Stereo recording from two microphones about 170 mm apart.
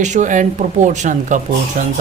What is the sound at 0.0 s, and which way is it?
Speech, 45° right (ahead or behind).